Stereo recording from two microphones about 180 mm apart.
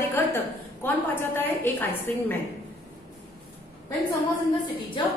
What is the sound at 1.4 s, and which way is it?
Speech, 10° left (ahead or behind).